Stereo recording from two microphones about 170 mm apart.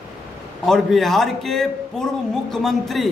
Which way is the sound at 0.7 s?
Centre (ahead or behind).